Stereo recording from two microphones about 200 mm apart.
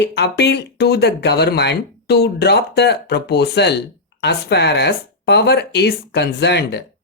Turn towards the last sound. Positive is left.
turn(degrees=60)  # may be behind; listen again after turning